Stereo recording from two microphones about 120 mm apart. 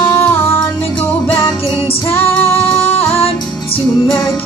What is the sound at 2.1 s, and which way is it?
Female singing, 20° left (ahead or behind).